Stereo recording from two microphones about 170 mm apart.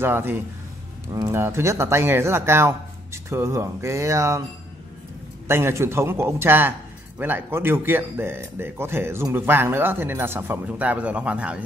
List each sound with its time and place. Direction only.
0.0 s speech: 15° right (ahead or behind)
5.5 s speech: 15° right (ahead or behind)